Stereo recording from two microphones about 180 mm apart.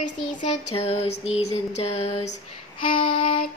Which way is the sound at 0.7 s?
35° left (ahead or behind).